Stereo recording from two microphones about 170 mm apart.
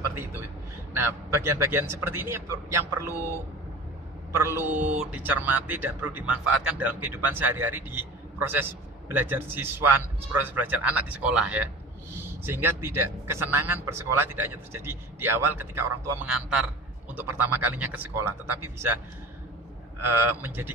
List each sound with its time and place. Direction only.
0.9 s a man's voice: 15° right (ahead or behind)
20.0 s a man's voice: 10° right (ahead or behind)